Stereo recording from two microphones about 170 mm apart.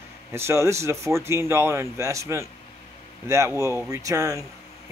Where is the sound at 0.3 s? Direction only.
15° right (ahead or behind).